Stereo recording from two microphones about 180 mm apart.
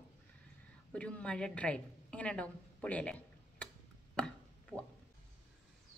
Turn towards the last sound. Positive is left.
turn(degrees=5)  # may be behind; listen again after turning